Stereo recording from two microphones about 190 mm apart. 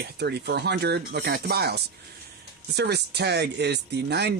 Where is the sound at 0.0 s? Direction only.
60° right (ahead or behind).